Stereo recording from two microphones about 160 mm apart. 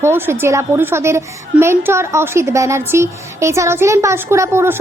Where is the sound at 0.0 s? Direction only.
15° right (ahead or behind).